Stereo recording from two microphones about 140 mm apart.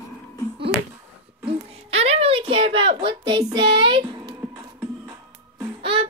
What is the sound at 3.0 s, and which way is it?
Speech, 40° right (ahead or behind).